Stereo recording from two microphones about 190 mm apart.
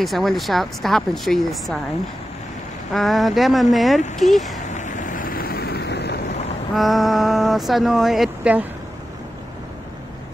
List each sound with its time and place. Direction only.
0.0 s speech: centre (ahead or behind)
2.9 s speech: centre (ahead or behind)
4.6 s vehicle: 40° left (ahead or behind); by 6.3 s 60° left (ahead or behind)
6.7 s speech: centre (ahead or behind)